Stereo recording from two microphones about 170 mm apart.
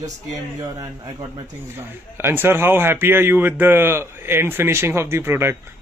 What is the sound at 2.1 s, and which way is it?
A man's voice, 15° right (ahead or behind).